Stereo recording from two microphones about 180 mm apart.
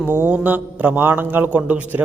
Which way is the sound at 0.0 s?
10° right (ahead or behind).